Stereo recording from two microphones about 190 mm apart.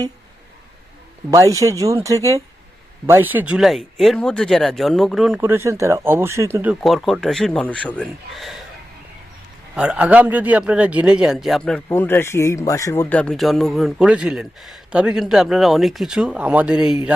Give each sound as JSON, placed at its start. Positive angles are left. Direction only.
{"t": 1.3, "sound": "a man's voice", "side_deg": -15}
{"t": 5.4, "sound": "speech", "side_deg": -15}
{"t": 6.8, "sound": "a man's voice", "side_deg": 0}
{"t": 9.7, "sound": "a man's voice", "side_deg": -5}